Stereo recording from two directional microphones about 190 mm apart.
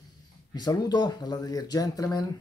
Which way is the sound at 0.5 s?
20° left (ahead or behind).